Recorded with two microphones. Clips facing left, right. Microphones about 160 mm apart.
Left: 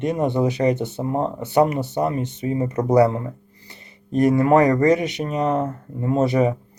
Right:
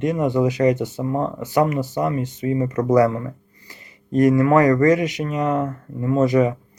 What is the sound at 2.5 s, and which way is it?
Speech, 30° left (ahead or behind).